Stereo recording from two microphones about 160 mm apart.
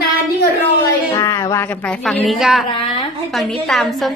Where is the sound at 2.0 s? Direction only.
Centre (ahead or behind).